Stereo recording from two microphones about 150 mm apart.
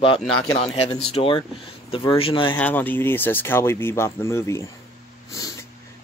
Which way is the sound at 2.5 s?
10° left (ahead or behind).